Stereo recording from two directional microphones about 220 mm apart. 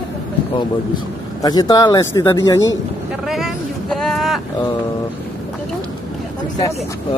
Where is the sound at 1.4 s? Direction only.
15° left (ahead or behind).